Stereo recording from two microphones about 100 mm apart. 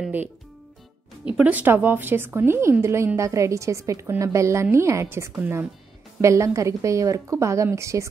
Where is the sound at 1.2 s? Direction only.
10° right (ahead or behind); by 5.0 s 30° right (ahead or behind).